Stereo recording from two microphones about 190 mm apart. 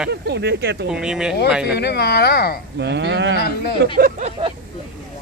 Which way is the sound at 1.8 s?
60° left (ahead or behind).